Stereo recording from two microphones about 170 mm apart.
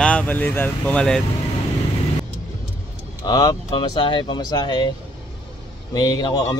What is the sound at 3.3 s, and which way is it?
A man's voice, 20° left (ahead or behind).